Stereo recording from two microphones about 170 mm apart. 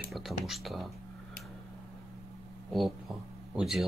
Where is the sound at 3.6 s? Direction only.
Centre (ahead or behind).